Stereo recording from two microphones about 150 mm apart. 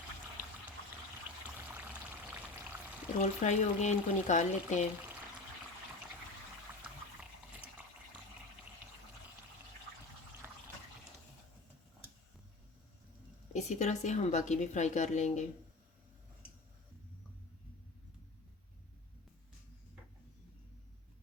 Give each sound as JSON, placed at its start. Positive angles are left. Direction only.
{"t": 3.2, "sound": "a woman's voice", "side_deg": 50}
{"t": 13.5, "sound": "a woman's voice", "side_deg": 50}